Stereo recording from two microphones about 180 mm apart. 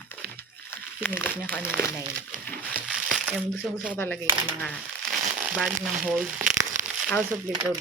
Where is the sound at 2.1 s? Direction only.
55° right (ahead or behind).